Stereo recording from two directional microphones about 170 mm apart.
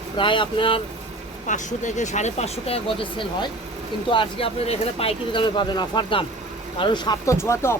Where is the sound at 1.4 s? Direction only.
45° left (ahead or behind).